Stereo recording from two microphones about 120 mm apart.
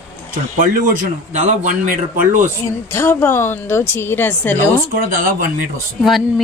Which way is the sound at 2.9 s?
20° left (ahead or behind).